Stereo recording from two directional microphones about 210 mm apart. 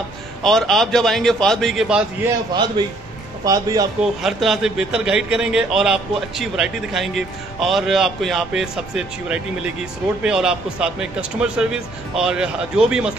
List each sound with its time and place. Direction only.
0.4 s a man's voice: centre (ahead or behind)
3.4 s a man's voice: 15° right (ahead or behind)
4.0 s a man's voice: centre (ahead or behind)